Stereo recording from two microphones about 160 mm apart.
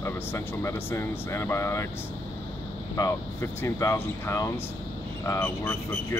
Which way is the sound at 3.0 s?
20° left (ahead or behind).